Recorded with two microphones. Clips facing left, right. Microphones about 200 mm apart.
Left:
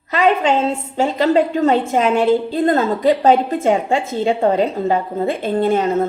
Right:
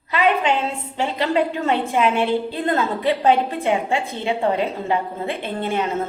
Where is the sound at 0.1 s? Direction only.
45° left (ahead or behind).